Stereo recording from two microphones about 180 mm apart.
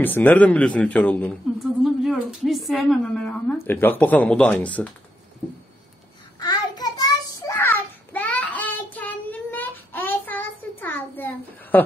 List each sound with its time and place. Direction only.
0.0 s a woman's voice: 10° left (ahead or behind)
6.4 s child singing: 20° left (ahead or behind)